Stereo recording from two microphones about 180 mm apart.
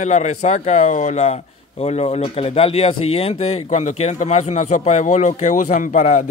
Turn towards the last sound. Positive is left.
turn(degrees=40)  # may be behind; listen again after turning